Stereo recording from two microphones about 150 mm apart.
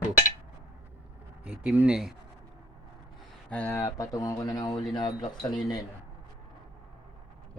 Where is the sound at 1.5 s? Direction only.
10° right (ahead or behind).